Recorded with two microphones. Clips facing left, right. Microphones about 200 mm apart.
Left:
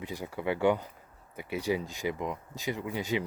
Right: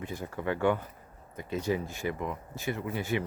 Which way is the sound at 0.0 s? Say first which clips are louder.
Even; 15° left (ahead or behind).